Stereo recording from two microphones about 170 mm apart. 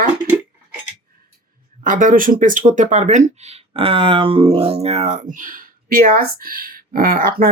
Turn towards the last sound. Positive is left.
turn(degrees=-55)  # may be behind; listen again after turning